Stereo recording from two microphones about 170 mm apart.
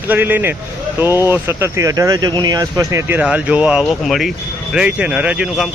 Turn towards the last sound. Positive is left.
turn(degrees=-5)  # may be behind; listen again after turning